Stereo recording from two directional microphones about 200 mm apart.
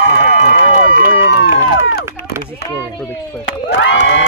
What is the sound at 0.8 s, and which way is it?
Run, 65° left (ahead or behind).